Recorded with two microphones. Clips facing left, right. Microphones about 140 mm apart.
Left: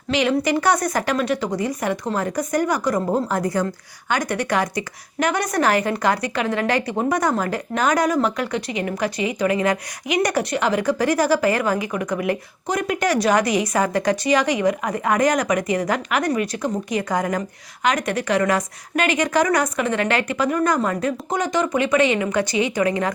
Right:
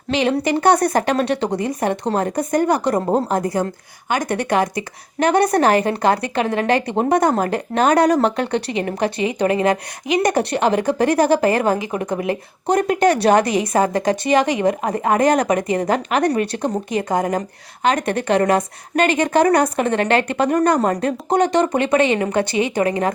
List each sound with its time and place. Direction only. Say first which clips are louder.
0.1 s a woman's voice: right 1 dB; 25° right (ahead or behind)
22.1 s speech: right 2 dB; 40° right (ahead or behind)
22.8 s a woman's voice: right 3 dB; 30° right (ahead or behind)